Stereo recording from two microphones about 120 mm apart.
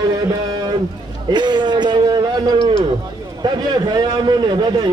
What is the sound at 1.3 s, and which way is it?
A man's voice, 40° right (ahead or behind).